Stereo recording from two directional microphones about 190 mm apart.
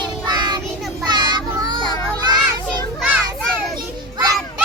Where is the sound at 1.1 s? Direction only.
25° right (ahead or behind).